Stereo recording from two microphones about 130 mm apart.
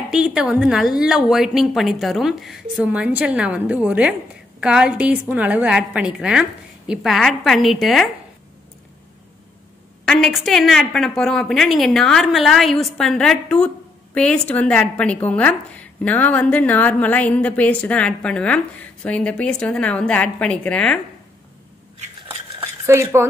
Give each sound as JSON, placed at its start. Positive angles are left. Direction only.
{"t": 0.1, "sound": "a woman's voice", "side_deg": -5}
{"t": 10.0, "sound": "a woman's voice", "side_deg": 5}
{"t": 22.6, "sound": "dishes", "side_deg": -20}